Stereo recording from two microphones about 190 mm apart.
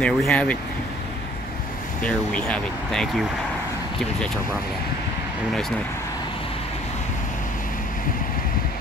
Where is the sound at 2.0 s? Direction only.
5° left (ahead or behind).